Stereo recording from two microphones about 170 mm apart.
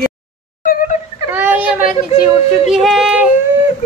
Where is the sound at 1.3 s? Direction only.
10° right (ahead or behind).